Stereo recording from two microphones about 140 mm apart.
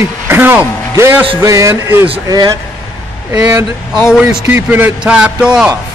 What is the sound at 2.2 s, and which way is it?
Speech, 30° right (ahead or behind).